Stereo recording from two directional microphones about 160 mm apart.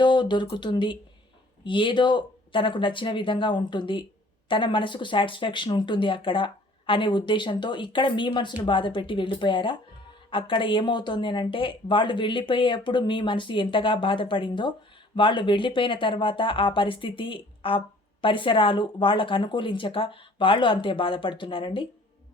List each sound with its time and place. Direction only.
0.0 s speech: 30° left (ahead or behind)